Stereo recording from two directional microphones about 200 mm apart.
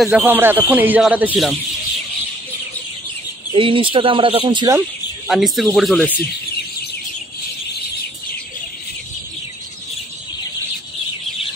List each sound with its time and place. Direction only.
0.0 s speech: 5° right (ahead or behind)
3.5 s speech: 25° right (ahead or behind)
5.3 s speech: centre (ahead or behind)